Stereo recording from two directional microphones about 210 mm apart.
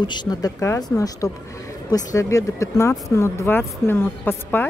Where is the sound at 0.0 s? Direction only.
20° left (ahead or behind).